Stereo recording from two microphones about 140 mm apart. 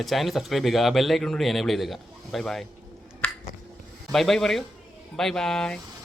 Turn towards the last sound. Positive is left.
turn(degrees=5)  # may be behind; listen again after turning